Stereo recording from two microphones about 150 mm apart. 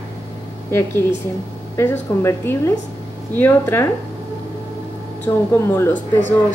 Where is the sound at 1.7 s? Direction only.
15° left (ahead or behind).